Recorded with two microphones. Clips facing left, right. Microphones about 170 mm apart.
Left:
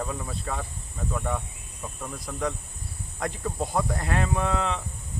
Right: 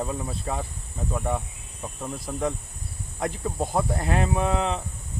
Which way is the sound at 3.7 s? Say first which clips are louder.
Right 2 dB; 25° right (ahead or behind).